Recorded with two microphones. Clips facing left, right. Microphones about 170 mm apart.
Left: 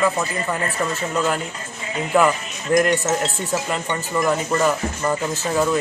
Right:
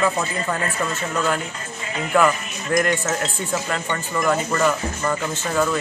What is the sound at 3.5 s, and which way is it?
Speech, 10° left (ahead or behind).